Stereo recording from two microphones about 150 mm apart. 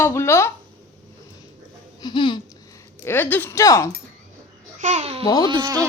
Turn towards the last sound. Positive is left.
turn(degrees=-25)  # may be behind; listen again after turning